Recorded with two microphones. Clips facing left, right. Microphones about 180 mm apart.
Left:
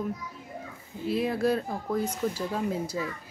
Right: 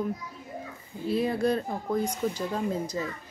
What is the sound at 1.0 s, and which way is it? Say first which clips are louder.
A child's voice: even; centre (ahead or behind).